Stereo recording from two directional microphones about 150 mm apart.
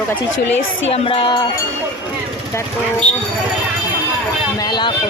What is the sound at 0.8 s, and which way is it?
Music, 40° left (ahead or behind).